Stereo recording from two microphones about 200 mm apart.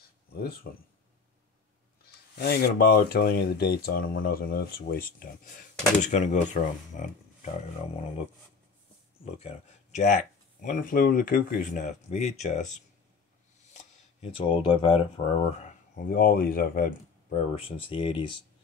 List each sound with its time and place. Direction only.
0.3 s speech: 50° left (ahead or behind)
2.0 s speech: 50° left (ahead or behind); by 8.0 s 35° left (ahead or behind)
9.2 s speech: 30° left (ahead or behind)
16.0 s speech: 45° left (ahead or behind)
17.3 s speech: 25° left (ahead or behind)